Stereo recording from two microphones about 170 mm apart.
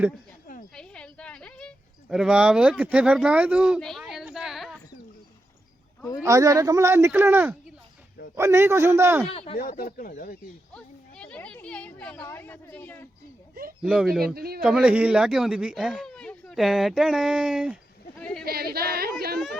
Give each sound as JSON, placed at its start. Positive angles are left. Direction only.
{"t": 0.7, "sound": "a sound", "side_deg": 5}
{"t": 6.2, "sound": "speech", "side_deg": -20}
{"t": 9.3, "sound": "speech", "side_deg": 35}
{"t": 9.6, "sound": "speech", "side_deg": 65}
{"t": 10.8, "sound": "speech", "side_deg": 5}
{"t": 13.8, "sound": "speech", "side_deg": -5}
{"t": 14.3, "sound": "speech", "side_deg": -65}
{"t": 14.6, "sound": "speech", "side_deg": -5}
{"t": 18.4, "sound": "speech", "side_deg": -65}